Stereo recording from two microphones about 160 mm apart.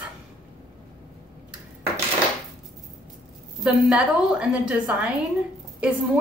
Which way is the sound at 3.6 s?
5° right (ahead or behind).